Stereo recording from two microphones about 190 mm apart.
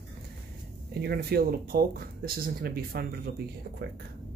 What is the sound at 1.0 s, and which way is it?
Speech, 55° right (ahead or behind).